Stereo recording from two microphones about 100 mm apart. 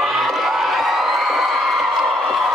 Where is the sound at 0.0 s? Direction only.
5° right (ahead or behind).